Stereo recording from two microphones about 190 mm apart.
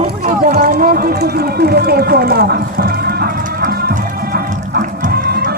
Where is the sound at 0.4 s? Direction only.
55° right (ahead or behind).